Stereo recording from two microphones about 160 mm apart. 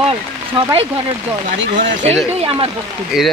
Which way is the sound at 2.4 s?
35° right (ahead or behind).